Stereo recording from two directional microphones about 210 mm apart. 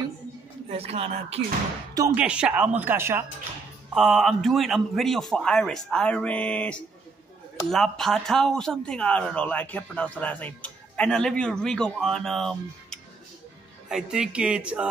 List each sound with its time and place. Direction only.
0.7 s speech: 30° right (ahead or behind)
2.0 s a man's voice: 10° right (ahead or behind)